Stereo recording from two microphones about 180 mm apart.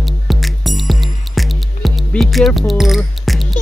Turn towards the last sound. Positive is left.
turn(degrees=0)  # may be behind; listen again after turning